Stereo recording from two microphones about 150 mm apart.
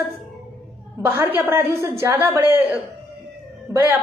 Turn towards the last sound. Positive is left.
turn(degrees=-15)  # may be behind; listen again after turning